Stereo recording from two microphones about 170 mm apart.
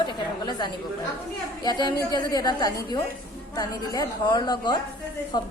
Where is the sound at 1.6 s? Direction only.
25° left (ahead or behind).